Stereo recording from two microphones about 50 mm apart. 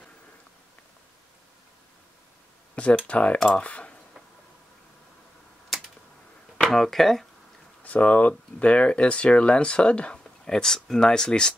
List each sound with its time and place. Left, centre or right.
2.7 s a sound: left
3.1 s speech: left
6.6 s speech: centre
7.8 s speech: left
10.1 s speech: centre